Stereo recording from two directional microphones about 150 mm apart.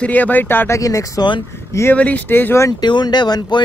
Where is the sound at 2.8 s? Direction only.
30° left (ahead or behind).